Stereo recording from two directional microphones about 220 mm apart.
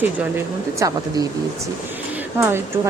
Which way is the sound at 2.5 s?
10° right (ahead or behind).